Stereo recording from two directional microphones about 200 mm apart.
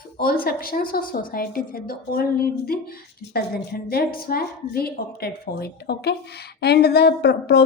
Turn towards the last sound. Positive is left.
turn(degrees=55)  # may be behind; listen again after turning